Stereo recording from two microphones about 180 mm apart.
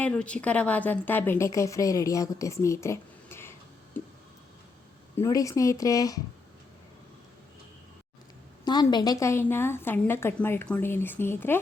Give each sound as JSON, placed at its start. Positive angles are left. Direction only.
{"t": 0.0, "sound": "a woman's voice", "side_deg": 5}
{"t": 3.9, "sound": "a sound", "side_deg": 10}
{"t": 5.1, "sound": "speech", "side_deg": 15}
{"t": 8.6, "sound": "a woman's voice", "side_deg": 25}